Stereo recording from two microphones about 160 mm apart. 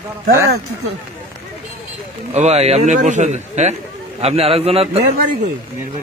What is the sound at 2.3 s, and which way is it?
A man's voice, 45° right (ahead or behind).